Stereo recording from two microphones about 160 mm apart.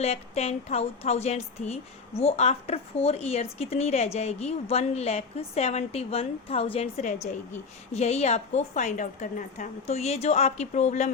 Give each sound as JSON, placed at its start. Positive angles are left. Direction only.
{"t": 0.0, "sound": "a woman's voice", "side_deg": 40}